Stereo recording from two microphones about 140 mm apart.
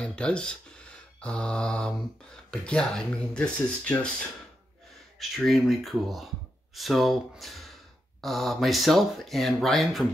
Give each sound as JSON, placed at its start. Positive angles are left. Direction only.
{"t": 0.0, "sound": "speech", "side_deg": 5}
{"t": 5.3, "sound": "speech", "side_deg": 0}